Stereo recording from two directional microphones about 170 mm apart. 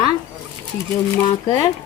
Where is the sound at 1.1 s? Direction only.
20° left (ahead or behind).